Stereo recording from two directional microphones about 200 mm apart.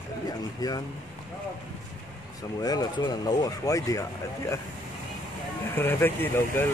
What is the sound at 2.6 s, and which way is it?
Speech, 20° left (ahead or behind).